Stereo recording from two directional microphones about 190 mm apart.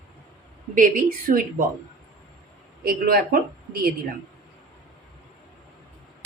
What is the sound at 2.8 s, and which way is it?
Speech, 55° right (ahead or behind).